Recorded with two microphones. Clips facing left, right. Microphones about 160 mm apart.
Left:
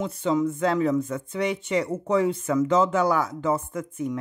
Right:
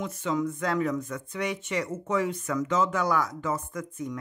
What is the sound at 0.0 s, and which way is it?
Speech, 30° left (ahead or behind).